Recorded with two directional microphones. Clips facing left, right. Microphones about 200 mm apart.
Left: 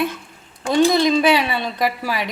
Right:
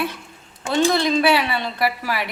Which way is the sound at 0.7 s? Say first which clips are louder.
Left 3 dB; 15° left (ahead or behind).